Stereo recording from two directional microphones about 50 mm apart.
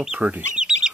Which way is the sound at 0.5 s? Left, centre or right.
Centre.